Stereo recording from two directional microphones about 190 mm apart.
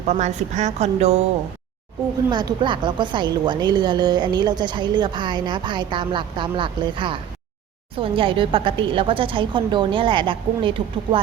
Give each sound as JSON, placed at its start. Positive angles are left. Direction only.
{"t": 0.1, "sound": "a woman's voice", "side_deg": -35}
{"t": 2.3, "sound": "a woman's voice", "side_deg": -25}